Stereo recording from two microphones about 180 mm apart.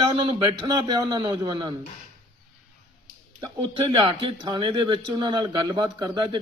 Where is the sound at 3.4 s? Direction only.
25° right (ahead or behind).